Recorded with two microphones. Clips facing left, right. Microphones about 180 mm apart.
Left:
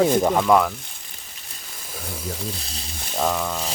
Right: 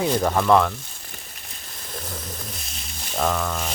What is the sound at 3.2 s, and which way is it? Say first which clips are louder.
Speech: even; 10° left (ahead or behind).